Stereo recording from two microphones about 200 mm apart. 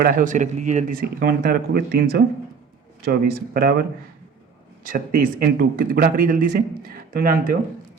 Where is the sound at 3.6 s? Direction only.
45° right (ahead or behind).